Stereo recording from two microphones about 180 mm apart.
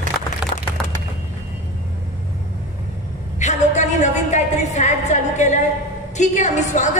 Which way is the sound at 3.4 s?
40° left (ahead or behind).